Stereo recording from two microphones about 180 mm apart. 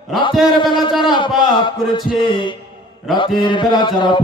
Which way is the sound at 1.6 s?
25° left (ahead or behind).